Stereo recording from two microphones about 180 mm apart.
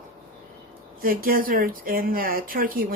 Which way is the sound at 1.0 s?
55° right (ahead or behind).